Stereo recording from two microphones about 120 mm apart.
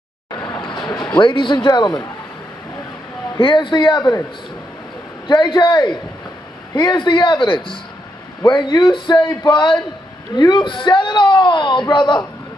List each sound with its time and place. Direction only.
0.5 s a sound: 40° left (ahead or behind)
1.2 s speech: 40° left (ahead or behind)
3.3 s speech: 45° left (ahead or behind)
5.3 s a man's voice: 40° left (ahead or behind)